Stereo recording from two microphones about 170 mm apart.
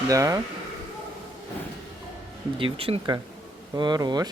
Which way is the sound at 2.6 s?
30° right (ahead or behind).